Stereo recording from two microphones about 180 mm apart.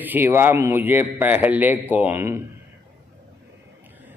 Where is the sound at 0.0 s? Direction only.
10° right (ahead or behind).